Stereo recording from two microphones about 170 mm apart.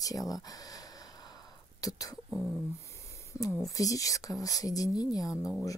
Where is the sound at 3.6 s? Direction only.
20° left (ahead or behind).